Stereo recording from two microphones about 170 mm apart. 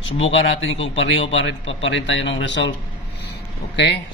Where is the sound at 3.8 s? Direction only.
90° left.